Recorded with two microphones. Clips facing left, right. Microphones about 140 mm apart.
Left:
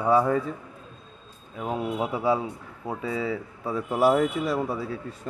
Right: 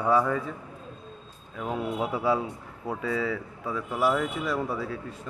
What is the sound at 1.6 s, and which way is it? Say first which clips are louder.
A man's voice: left 1 dB; 25° left (ahead or behind).